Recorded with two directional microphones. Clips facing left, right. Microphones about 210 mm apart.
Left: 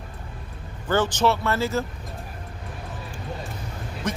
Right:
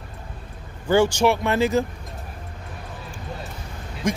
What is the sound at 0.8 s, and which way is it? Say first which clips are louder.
Speech: right 4 dB; 10° right (ahead or behind).